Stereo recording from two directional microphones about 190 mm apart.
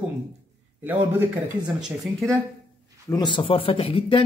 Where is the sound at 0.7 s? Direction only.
10° right (ahead or behind).